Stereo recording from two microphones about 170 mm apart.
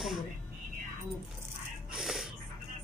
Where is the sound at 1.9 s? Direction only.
Centre (ahead or behind).